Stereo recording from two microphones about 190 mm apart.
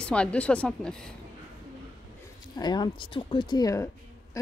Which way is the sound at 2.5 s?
20° left (ahead or behind).